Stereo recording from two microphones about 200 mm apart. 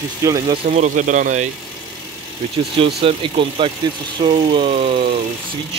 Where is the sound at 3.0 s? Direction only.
25° right (ahead or behind).